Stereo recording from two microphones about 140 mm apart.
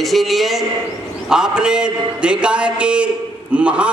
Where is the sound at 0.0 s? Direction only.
Centre (ahead or behind).